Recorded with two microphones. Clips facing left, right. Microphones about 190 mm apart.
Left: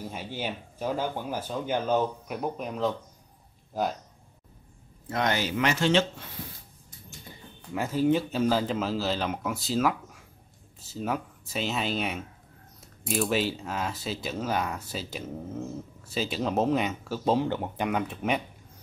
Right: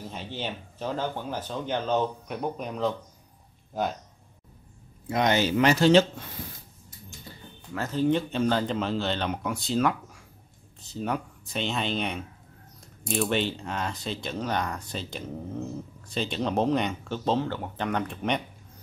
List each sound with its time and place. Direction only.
0.1 s speech: 10° left (ahead or behind)
5.0 s speech: 15° right (ahead or behind); by 6.0 s 35° right (ahead or behind)
7.7 s speech: 10° left (ahead or behind)